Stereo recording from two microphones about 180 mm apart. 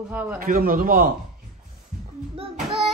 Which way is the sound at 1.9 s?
50° right (ahead or behind).